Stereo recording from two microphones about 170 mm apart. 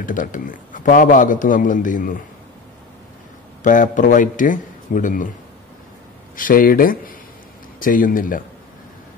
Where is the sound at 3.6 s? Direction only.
50° left (ahead or behind).